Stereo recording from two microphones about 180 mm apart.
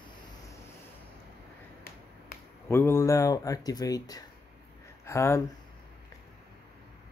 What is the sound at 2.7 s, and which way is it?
Speech, 15° left (ahead or behind).